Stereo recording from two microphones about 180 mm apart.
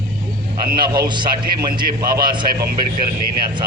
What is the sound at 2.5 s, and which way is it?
Speech, 55° right (ahead or behind).